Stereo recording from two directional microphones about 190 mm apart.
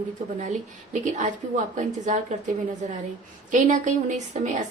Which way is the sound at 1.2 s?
40° right (ahead or behind).